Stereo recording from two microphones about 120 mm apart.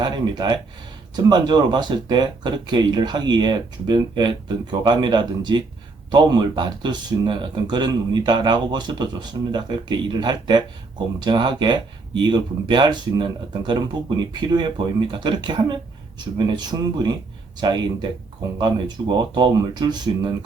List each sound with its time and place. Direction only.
0.0 s speech: 35° right (ahead or behind)